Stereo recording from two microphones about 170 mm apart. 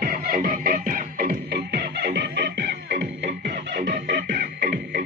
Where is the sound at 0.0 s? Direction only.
55° right (ahead or behind); by 4.3 s 90° right.